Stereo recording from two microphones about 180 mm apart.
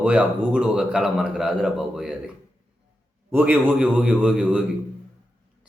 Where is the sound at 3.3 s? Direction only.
10° right (ahead or behind).